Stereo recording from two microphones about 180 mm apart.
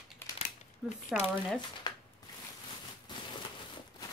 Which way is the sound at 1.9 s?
25° left (ahead or behind).